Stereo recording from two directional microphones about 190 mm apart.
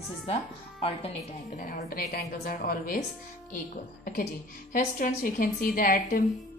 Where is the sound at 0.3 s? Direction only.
35° left (ahead or behind); by 6.2 s 50° left (ahead or behind).